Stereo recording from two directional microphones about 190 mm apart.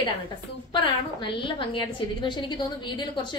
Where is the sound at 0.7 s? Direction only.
25° left (ahead or behind).